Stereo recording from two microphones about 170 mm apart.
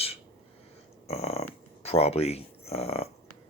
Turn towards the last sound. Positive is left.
turn(degrees=35)  # may be behind; listen again after turning